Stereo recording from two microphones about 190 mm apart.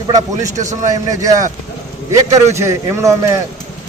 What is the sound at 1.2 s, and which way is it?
A man's voice, 20° right (ahead or behind).